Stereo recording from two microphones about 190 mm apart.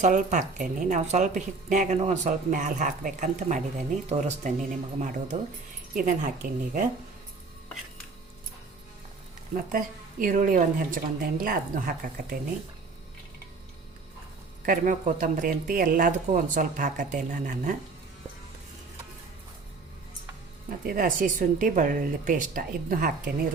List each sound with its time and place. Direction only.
0.0 s speech: 40° right (ahead or behind)
9.6 s speech: 45° right (ahead or behind)
14.6 s speech: 45° right (ahead or behind)
20.7 s speech: 45° right (ahead or behind)